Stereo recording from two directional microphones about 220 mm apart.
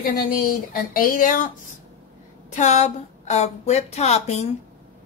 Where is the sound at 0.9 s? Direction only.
40° left (ahead or behind).